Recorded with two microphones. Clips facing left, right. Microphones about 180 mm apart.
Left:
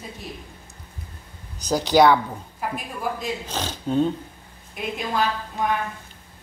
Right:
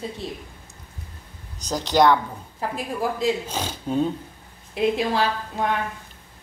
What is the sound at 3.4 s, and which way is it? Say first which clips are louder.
Speech: even; 10° right (ahead or behind).